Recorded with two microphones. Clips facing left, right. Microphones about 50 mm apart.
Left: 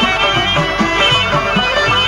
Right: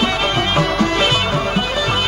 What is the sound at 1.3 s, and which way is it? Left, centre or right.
Music, left.